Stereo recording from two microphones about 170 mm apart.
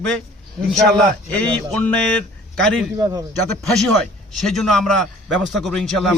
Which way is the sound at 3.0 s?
20° right (ahead or behind).